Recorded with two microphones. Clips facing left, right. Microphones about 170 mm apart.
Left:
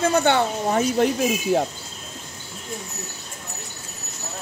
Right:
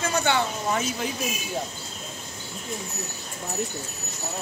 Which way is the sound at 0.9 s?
65° left (ahead or behind).